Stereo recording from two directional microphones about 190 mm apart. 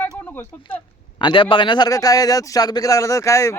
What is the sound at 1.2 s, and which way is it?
A man's voice, 25° left (ahead or behind).